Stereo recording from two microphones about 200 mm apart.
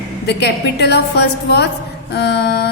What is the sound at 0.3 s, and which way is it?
A woman's voice, 60° left (ahead or behind).